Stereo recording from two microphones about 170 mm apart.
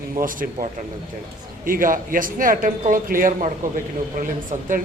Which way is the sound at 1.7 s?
55° right (ahead or behind).